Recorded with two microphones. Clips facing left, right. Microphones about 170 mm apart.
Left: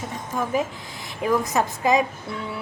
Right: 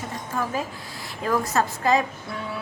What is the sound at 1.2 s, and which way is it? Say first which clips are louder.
Speech: left 2 dB; 15° left (ahead or behind).